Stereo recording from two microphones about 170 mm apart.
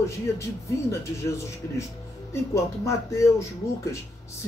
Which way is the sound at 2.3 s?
20° left (ahead or behind).